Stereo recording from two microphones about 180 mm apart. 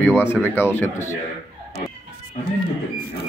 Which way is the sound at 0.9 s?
40° left (ahead or behind).